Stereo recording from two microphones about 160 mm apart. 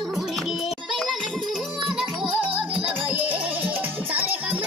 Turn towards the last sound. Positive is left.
turn(degrees=-10)  # may be behind; listen again after turning